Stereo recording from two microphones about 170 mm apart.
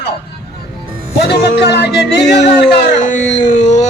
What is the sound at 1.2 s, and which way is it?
A man's voice, 85° left.